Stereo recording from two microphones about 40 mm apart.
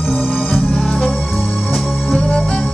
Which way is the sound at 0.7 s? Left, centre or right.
Centre.